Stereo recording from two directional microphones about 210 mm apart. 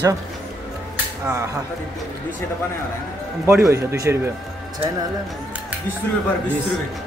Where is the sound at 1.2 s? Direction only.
15° right (ahead or behind).